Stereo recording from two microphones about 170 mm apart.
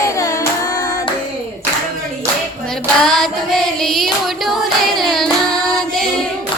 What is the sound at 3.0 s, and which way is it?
Child singing, centre (ahead or behind).